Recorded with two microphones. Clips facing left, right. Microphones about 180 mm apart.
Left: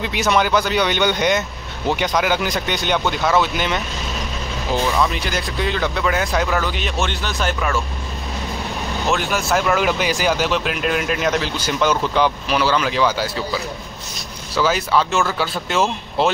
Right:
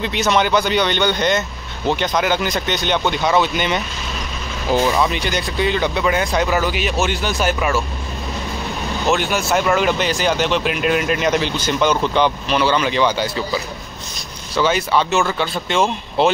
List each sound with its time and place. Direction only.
0.0 s speech: 5° left (ahead or behind)
5.0 s speech: centre (ahead or behind)
9.1 s speech: centre (ahead or behind)